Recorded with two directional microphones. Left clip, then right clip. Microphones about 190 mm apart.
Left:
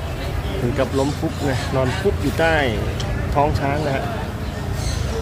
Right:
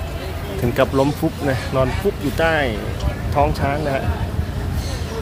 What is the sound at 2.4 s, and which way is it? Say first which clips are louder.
Speech: even; 10° right (ahead or behind).